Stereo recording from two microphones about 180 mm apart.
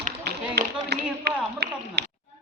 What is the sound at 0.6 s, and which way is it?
Speech, 65° right (ahead or behind).